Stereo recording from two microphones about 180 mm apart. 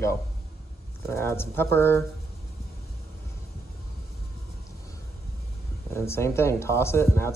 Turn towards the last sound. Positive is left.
turn(degrees=15)  # may be behind; listen again after turning